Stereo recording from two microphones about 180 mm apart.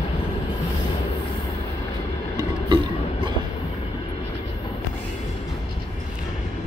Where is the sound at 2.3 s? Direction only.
25° right (ahead or behind).